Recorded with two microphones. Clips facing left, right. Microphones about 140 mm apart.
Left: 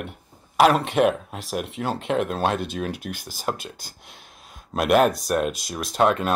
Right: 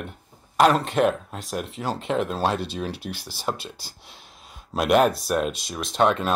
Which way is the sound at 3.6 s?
Centre (ahead or behind).